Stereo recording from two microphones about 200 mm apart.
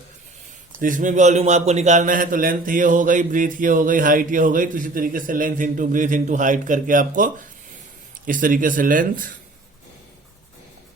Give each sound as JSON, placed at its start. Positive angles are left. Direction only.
{"t": 0.8, "sound": "a man's voice", "side_deg": -40}
{"t": 8.3, "sound": "speech", "side_deg": -45}